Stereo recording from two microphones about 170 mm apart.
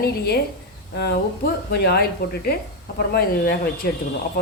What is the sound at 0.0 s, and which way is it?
Speech, 65° left (ahead or behind).